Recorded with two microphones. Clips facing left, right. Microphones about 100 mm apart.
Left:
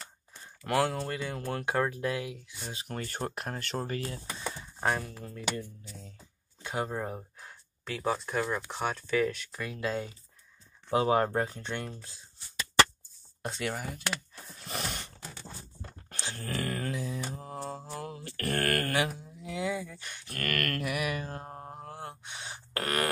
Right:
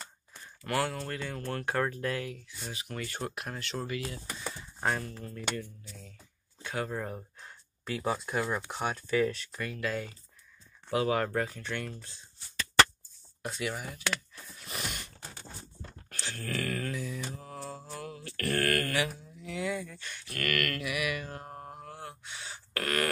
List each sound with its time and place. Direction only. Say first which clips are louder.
0.7 s speech: left 3 dB; 20° left (ahead or behind)
2.7 s speech: left 1 dB; 35° left (ahead or behind)
4.6 s speech: left 1 dB; 15° left (ahead or behind)
5.6 s speech: left 1 dB; 25° left (ahead or behind)
7.3 s a sound: left 1 dB; centre (ahead or behind)
8.3 s speech: even; 5° right (ahead or behind)
9.5 s speech: left 1 dB; 15° left (ahead or behind)
13.6 s speech: left 1 dB; 40° left (ahead or behind)
14.3 s a sound: left 3 dB; 35° left (ahead or behind)
16.1 s a sound: even; 25° left (ahead or behind)
17.4 s mantra: left 3 dB; 30° left (ahead or behind)
19.4 s speech: left 1 dB; 20° left (ahead or behind)
20.2 s mantra: right 1 dB; 40° left (ahead or behind)